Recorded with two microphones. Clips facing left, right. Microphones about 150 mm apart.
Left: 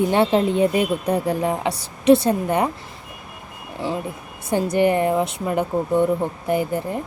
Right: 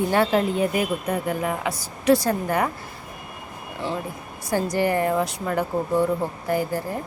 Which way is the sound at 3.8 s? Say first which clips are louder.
Left 3 dB; 15° left (ahead or behind).